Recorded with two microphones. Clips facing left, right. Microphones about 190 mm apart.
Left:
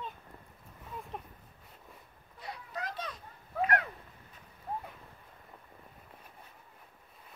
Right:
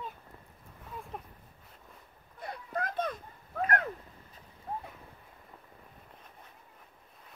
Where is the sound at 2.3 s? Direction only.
55° right (ahead or behind).